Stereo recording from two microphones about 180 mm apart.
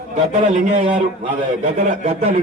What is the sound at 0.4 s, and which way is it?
A man's voice, 45° right (ahead or behind).